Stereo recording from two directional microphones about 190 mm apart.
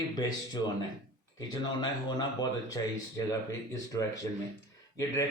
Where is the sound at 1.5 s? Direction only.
20° left (ahead or behind).